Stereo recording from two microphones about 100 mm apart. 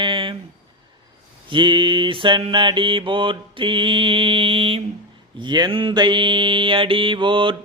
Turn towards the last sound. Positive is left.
turn(degrees=-55)  # may be behind; listen again after turning